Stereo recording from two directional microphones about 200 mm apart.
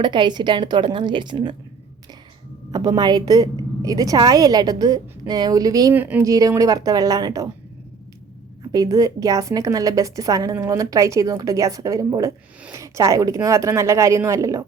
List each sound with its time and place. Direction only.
0.0 s a woman's voice: 25° right (ahead or behind)
2.7 s a woman's voice: 20° right (ahead or behind)
8.7 s a woman's voice: 15° right (ahead or behind)